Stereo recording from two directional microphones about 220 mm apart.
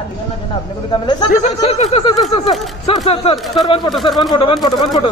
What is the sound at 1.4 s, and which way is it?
Speech, 30° left (ahead or behind).